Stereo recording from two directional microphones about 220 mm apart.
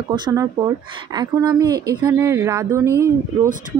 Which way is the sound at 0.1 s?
15° right (ahead or behind).